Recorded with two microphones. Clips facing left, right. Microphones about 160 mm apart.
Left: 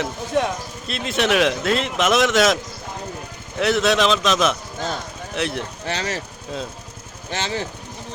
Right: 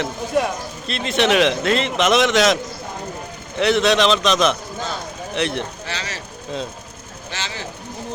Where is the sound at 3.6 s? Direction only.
5° left (ahead or behind).